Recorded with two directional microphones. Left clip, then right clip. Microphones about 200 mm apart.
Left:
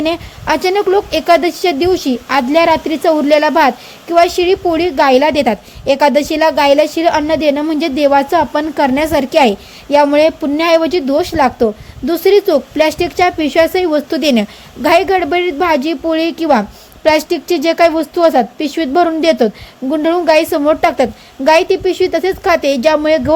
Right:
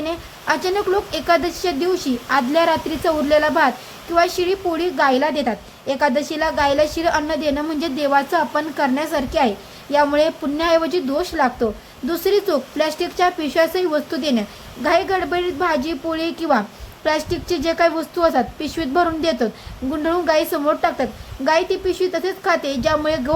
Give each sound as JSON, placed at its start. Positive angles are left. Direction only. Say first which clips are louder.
{"t": 0.0, "sound": "a woman's voice", "louder": "left 8 dB", "side_deg": 40}